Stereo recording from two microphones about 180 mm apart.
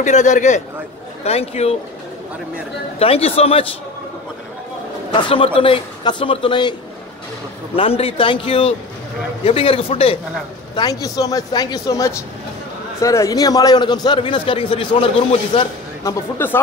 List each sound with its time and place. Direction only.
0.0 s a man's voice: 40° left (ahead or behind)
3.0 s a man's voice: 35° left (ahead or behind)
5.1 s a man's voice: 30° left (ahead or behind)
7.7 s a man's voice: 30° left (ahead or behind)
10.7 s a man's voice: 20° left (ahead or behind)
16.0 s speech: 15° left (ahead or behind)